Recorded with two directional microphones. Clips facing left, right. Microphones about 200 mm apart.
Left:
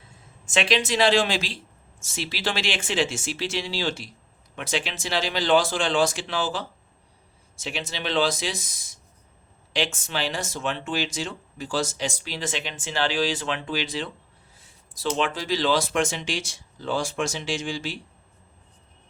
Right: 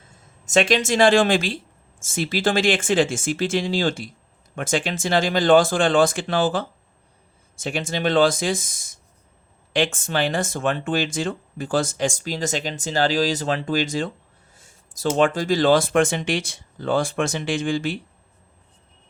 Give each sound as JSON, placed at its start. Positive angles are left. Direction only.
{"t": 0.4, "sound": "speech", "side_deg": -45}